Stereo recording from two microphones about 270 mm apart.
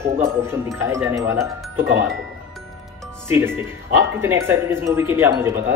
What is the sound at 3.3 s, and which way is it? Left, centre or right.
Speech, centre.